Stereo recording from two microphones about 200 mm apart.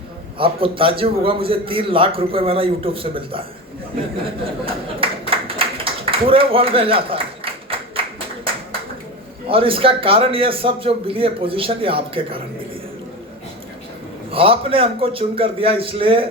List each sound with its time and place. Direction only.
0.3 s a man's voice: 25° right (ahead or behind)
4.6 s a sound: 25° right (ahead or behind)
9.5 s a man's voice: 25° right (ahead or behind)
14.3 s a man's voice: 30° right (ahead or behind)